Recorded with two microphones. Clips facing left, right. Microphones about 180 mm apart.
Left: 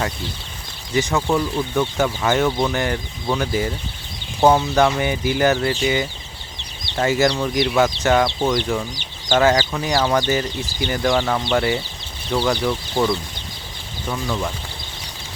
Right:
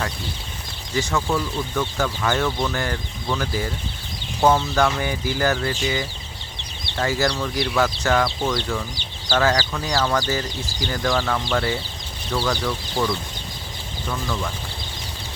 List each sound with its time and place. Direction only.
0.9 s speech: 20° left (ahead or behind)